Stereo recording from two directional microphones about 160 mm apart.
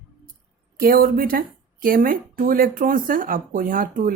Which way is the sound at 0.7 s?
65° right (ahead or behind).